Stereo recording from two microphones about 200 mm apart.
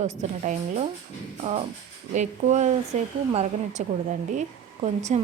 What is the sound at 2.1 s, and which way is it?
Speech, 35° right (ahead or behind).